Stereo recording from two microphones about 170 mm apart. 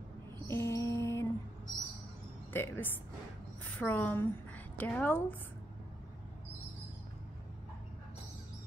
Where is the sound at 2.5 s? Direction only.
15° left (ahead or behind).